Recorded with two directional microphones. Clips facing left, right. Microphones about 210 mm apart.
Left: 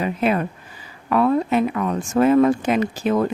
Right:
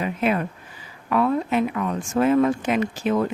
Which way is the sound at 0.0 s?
35° left (ahead or behind).